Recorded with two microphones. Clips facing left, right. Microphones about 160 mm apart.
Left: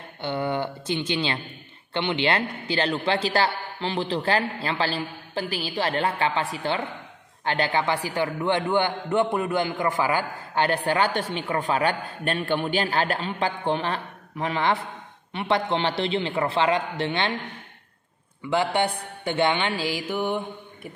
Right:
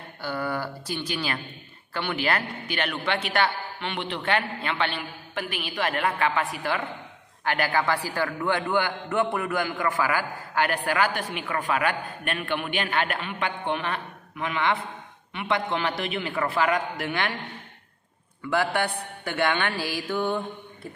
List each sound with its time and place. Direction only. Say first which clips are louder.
0.2 s a man's voice: left 3 dB; 20° left (ahead or behind)
18.5 s a man's voice: left 2 dB; 20° left (ahead or behind)